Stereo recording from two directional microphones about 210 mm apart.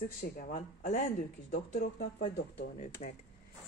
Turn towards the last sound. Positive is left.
turn(degrees=35)  # may be behind; listen again after turning